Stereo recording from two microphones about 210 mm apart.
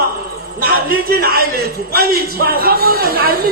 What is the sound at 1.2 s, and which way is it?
A woman's voice, 45° right (ahead or behind).